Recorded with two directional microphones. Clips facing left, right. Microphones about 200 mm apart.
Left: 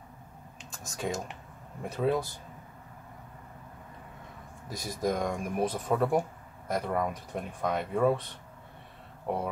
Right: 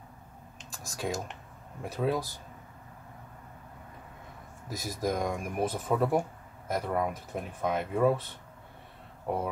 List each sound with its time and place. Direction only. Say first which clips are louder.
0.7 s speech: even; centre (ahead or behind)
4.6 s speech: left 1 dB; 5° right (ahead or behind)